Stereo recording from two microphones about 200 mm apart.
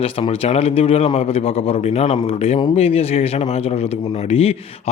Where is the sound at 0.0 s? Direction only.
30° left (ahead or behind).